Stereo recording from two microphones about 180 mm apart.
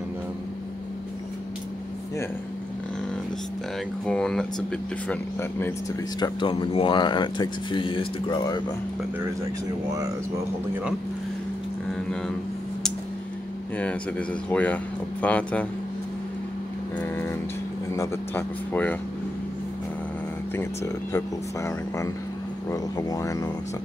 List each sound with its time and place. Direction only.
4.0 s speech: 5° left (ahead or behind); by 8.6 s 25° left (ahead or behind)
14.5 s speech: 10° left (ahead or behind)
17.9 s speech: 15° left (ahead or behind)
20.5 s speech: 15° left (ahead or behind)
22.7 s speech: 20° left (ahead or behind)